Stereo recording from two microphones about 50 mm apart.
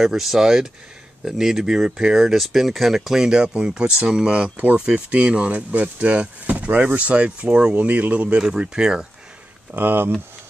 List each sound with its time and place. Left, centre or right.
0.0 s speech: centre
9.7 s speech: right